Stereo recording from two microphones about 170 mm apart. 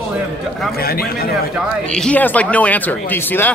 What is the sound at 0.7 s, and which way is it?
Speech, 65° left (ahead or behind).